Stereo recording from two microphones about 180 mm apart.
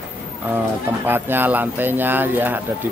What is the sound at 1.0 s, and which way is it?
Speech, 10° right (ahead or behind).